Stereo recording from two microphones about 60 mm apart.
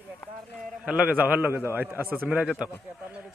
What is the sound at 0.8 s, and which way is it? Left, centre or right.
A man's voice, centre.